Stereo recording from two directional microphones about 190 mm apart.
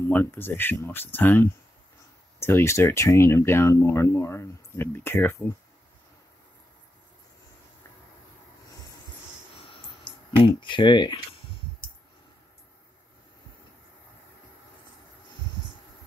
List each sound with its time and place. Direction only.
0.0 s speech: 10° left (ahead or behind)
2.4 s speech: 15° left (ahead or behind)
9.7 s a sound: 25° left (ahead or behind)